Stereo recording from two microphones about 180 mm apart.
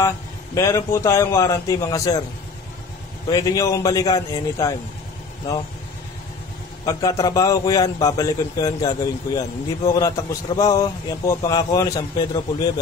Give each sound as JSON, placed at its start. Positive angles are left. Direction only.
{"t": 0.6, "sound": "a man's voice", "side_deg": 15}
{"t": 3.3, "sound": "a man's voice", "side_deg": 20}
{"t": 6.9, "sound": "a man's voice", "side_deg": 20}